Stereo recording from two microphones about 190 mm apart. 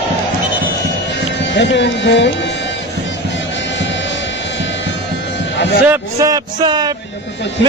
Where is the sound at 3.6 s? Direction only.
70° left (ahead or behind).